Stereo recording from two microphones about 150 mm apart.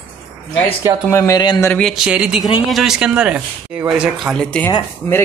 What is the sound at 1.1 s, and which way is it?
Speech, 20° left (ahead or behind).